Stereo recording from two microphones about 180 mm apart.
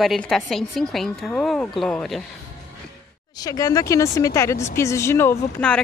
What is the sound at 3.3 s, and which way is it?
Speech, 20° left (ahead or behind).